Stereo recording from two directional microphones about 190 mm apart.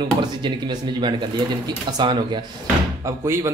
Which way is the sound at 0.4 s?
25° right (ahead or behind).